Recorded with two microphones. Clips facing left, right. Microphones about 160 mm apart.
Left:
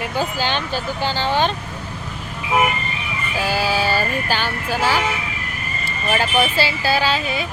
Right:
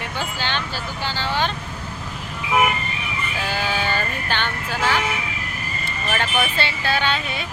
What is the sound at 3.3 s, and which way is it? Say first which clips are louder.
Speech: left 5 dB; 10° left (ahead or behind).